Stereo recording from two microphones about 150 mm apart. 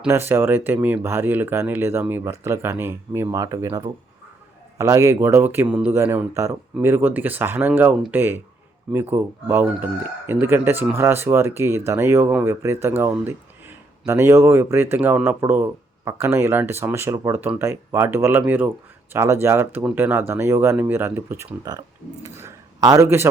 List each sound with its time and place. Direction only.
0.1 s a man's voice: 15° right (ahead or behind)